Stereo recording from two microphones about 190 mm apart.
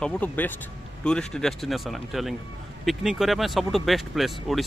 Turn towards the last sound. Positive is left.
turn(degrees=0)  # may be behind; listen again after turning